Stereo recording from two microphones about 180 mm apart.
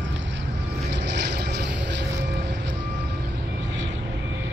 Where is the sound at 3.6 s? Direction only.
90° right.